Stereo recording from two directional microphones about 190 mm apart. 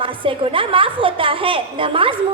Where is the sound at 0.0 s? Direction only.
25° right (ahead or behind).